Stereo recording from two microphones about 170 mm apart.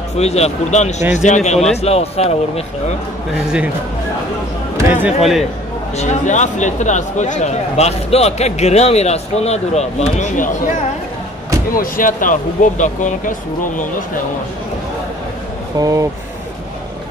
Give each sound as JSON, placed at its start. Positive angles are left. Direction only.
{"t": 0.2, "sound": "speech", "side_deg": 40}
{"t": 3.4, "sound": "speech", "side_deg": -5}
{"t": 4.7, "sound": "speech", "side_deg": -15}
{"t": 5.9, "sound": "speech", "side_deg": 45}
{"t": 11.7, "sound": "speech", "side_deg": 55}
{"t": 15.8, "sound": "speech", "side_deg": -20}